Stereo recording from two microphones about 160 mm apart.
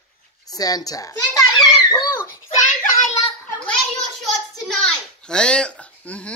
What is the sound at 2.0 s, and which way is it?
Belly laugh, 15° left (ahead or behind).